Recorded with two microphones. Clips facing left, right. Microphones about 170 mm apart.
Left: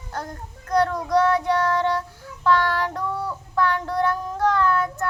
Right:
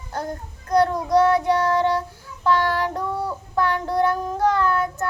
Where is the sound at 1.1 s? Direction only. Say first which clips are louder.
Right 2 dB; 10° right (ahead or behind).